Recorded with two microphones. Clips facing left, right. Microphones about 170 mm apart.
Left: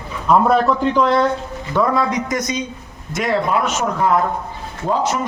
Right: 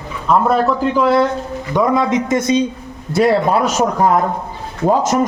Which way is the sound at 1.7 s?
20° right (ahead or behind).